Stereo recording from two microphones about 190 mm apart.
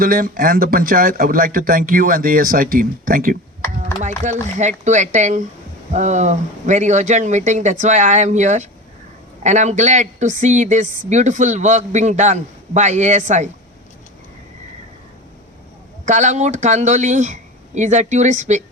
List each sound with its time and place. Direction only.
0.0 s speech: 50° right (ahead or behind)
16.0 s speech: 40° right (ahead or behind)